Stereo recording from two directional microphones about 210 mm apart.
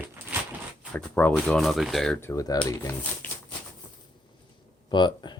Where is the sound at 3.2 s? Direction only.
10° left (ahead or behind).